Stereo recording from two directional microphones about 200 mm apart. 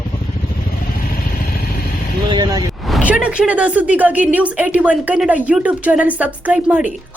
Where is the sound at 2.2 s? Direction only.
20° right (ahead or behind).